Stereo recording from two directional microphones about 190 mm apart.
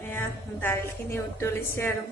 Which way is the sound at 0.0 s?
10° left (ahead or behind).